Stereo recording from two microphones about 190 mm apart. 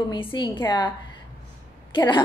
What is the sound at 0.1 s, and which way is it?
Speech, 25° left (ahead or behind).